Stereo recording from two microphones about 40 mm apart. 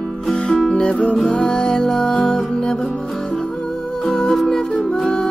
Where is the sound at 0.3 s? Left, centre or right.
Centre.